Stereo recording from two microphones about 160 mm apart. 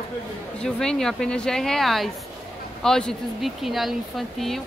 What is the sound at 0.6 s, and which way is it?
A woman's voice, 5° left (ahead or behind).